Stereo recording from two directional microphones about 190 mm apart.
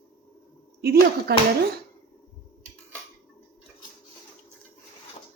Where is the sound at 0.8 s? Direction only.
55° right (ahead or behind).